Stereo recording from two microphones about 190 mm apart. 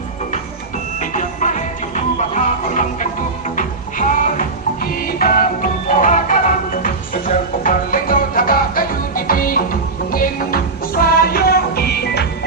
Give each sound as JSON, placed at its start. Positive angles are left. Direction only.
{"t": 0.9, "sound": "music", "side_deg": 40}